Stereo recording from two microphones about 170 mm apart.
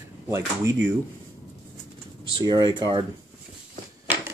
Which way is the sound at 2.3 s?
25° right (ahead or behind).